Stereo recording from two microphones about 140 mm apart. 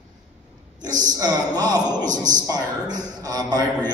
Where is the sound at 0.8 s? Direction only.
25° right (ahead or behind).